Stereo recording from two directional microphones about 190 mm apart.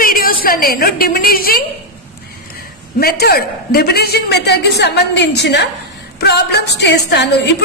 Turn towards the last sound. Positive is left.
turn(degrees=60)  # may be behind; listen again after turning